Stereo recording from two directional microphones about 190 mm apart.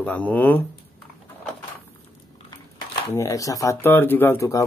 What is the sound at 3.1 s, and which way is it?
Speech, 15° left (ahead or behind).